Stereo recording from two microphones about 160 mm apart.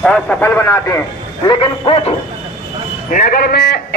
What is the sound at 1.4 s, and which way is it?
Speech, 30° left (ahead or behind).